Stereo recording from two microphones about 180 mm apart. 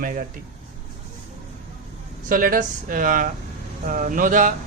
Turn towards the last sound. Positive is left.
turn(degrees=-50)  # may be behind; listen again after turning